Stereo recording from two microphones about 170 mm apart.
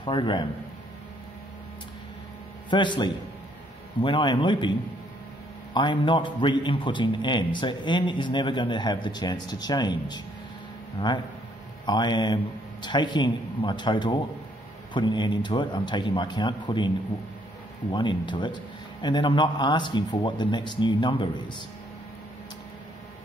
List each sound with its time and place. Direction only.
0.0 s a man's voice: 30° left (ahead or behind)
2.7 s a man's voice: 25° left (ahead or behind)
17.9 s a man's voice: 25° left (ahead or behind)